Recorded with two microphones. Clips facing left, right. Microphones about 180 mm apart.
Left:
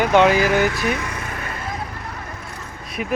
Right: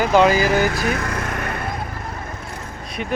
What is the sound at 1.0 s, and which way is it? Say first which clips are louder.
Vehicle: right 4 dB; 75° right (ahead or behind).